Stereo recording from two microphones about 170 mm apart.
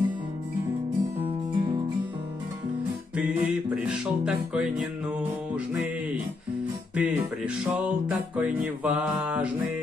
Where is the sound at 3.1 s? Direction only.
10° right (ahead or behind).